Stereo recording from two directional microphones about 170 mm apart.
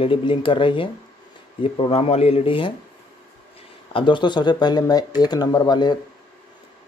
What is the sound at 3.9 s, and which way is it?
Speech, 30° left (ahead or behind).